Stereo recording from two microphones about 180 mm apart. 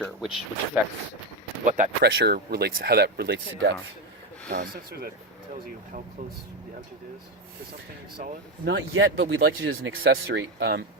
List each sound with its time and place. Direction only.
0.0 s speech: 5° right (ahead or behind)
1.7 s speech: 45° right (ahead or behind)
2.1 s speech: 60° right (ahead or behind)
4.4 s speech: 55° right (ahead or behind)
8.6 s speech: 65° right (ahead or behind)